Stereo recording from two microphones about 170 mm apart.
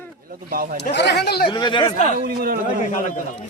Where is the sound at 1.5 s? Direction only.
25° left (ahead or behind).